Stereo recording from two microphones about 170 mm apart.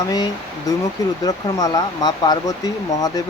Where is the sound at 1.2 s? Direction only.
20° left (ahead or behind).